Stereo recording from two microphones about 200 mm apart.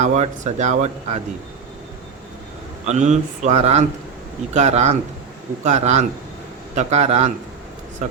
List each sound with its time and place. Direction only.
0.0 s speech: 35° right (ahead or behind)
2.8 s speech: 35° right (ahead or behind)